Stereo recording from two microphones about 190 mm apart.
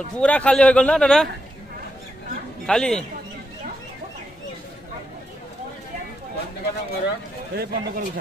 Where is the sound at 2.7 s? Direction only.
5° left (ahead or behind).